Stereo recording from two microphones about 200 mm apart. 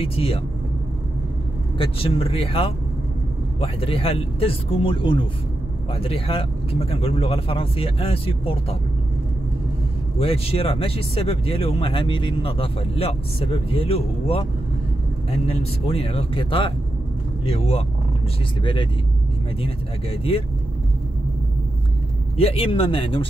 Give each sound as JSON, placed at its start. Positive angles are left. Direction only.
{"t": 0.0, "sound": "speech", "side_deg": 30}
{"t": 1.8, "sound": "speech", "side_deg": 30}
{"t": 10.1, "sound": "speech", "side_deg": 30}
{"t": 22.4, "sound": "speech", "side_deg": 30}